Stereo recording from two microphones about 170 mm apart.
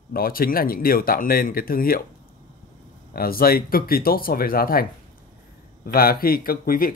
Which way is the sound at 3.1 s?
60° left (ahead or behind).